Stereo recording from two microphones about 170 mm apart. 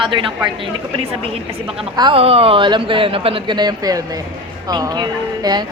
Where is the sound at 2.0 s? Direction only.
30° right (ahead or behind).